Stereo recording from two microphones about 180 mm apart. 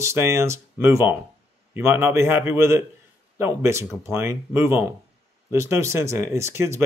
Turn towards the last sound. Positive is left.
turn(degrees=-15)  # may be behind; listen again after turning